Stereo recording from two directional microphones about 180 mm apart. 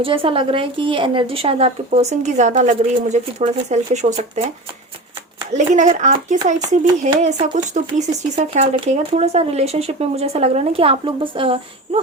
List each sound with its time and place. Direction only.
0.0 s speech: 30° right (ahead or behind)
5.5 s speech: 40° right (ahead or behind)